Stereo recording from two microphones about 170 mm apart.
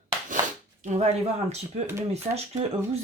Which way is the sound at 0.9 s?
40° right (ahead or behind).